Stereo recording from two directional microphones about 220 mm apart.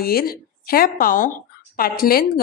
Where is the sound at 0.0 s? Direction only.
45° left (ahead or behind).